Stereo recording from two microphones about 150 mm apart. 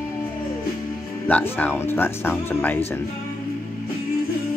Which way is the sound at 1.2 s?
15° left (ahead or behind).